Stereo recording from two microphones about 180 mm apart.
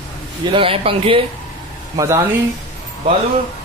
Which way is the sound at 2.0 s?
15° right (ahead or behind).